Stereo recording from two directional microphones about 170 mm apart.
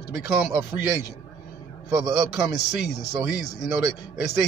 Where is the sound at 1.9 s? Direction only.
15° right (ahead or behind).